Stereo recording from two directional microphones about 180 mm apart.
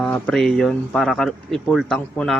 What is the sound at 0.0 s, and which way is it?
Speech, 5° left (ahead or behind).